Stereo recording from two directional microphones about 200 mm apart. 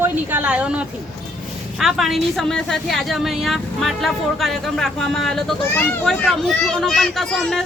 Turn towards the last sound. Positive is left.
turn(degrees=0)  # may be behind; listen again after turning